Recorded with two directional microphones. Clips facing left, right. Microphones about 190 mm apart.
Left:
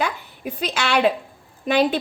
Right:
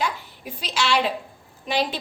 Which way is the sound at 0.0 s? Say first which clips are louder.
Left 3 dB; 60° left (ahead or behind).